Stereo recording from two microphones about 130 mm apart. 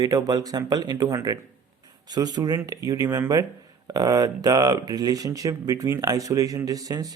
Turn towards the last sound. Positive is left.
turn(degrees=-30)  # may be behind; listen again after turning